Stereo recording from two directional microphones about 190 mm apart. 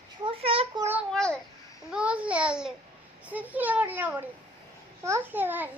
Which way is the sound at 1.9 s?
5° right (ahead or behind).